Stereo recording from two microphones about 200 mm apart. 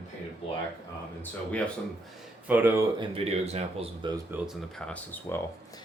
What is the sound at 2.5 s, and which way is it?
Speech, 10° right (ahead or behind).